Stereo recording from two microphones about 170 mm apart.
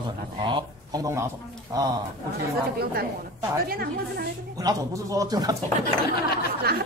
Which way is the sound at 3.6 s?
65° right (ahead or behind).